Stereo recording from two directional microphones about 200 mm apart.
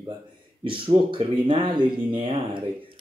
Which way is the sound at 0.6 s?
25° right (ahead or behind).